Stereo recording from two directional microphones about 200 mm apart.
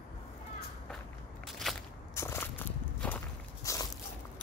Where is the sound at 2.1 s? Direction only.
10° left (ahead or behind).